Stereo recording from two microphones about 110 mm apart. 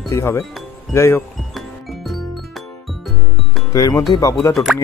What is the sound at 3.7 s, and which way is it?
Speech, 30° left (ahead or behind).